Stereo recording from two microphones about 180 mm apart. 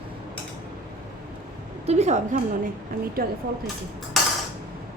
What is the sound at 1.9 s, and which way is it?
Speech, 40° right (ahead or behind).